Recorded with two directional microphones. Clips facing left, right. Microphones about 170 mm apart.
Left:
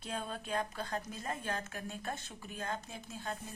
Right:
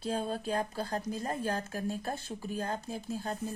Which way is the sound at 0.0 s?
30° right (ahead or behind).